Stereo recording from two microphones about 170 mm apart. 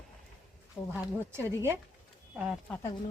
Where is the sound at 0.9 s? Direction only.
15° right (ahead or behind).